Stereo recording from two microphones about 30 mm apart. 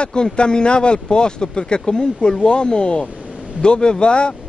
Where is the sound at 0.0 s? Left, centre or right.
Left.